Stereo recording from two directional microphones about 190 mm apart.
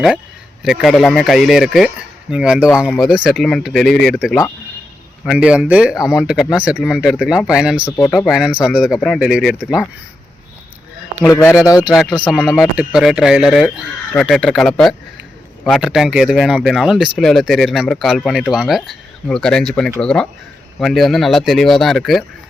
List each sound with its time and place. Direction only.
0.6 s speech: centre (ahead or behind)
11.3 s a man's voice: 15° left (ahead or behind)
11.8 s speech: 5° right (ahead or behind)